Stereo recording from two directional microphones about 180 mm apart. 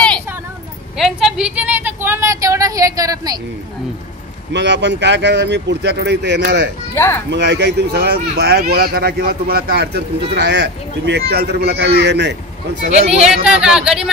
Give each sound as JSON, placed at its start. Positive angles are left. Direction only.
{"t": 0.9, "sound": "a woman's voice", "side_deg": 0}
{"t": 4.5, "sound": "speech", "side_deg": -75}
{"t": 7.0, "sound": "speech", "side_deg": 15}
{"t": 7.2, "sound": "speech", "side_deg": -75}
{"t": 12.8, "sound": "speech", "side_deg": -35}
{"t": 13.2, "sound": "speech", "side_deg": -5}